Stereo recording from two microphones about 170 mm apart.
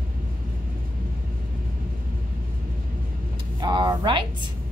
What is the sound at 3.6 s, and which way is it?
Speech, 25° right (ahead or behind).